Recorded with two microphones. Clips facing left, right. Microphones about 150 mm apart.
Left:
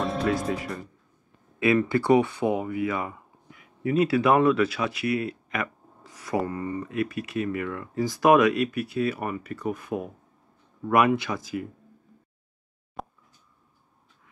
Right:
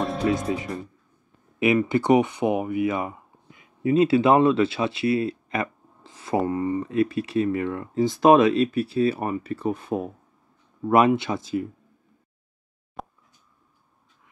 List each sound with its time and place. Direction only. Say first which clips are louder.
0.4 s speech: right 2 dB; centre (ahead or behind)
1.6 s speech: right 2 dB; 20° right (ahead or behind)
13.0 s a sound: even; centre (ahead or behind)